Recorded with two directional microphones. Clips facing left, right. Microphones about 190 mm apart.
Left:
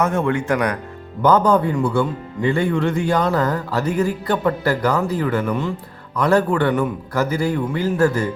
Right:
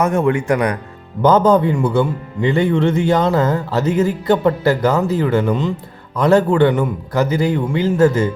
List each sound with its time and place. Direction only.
0.0 s a man's voice: 15° right (ahead or behind)